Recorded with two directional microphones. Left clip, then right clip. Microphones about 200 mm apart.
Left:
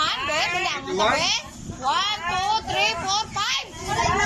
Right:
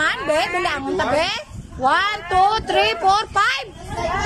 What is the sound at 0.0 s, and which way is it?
A woman's voice, 40° right (ahead or behind).